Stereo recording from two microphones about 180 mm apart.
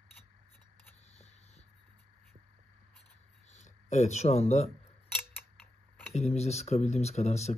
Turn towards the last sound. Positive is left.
turn(degrees=35)  # may be behind; listen again after turning